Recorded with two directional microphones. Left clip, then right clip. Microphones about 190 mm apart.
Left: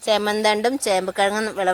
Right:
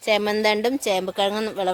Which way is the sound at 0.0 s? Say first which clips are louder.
Left 1 dB; 15° right (ahead or behind).